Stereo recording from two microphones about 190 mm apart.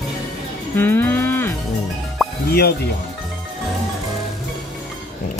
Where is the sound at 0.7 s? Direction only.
10° left (ahead or behind).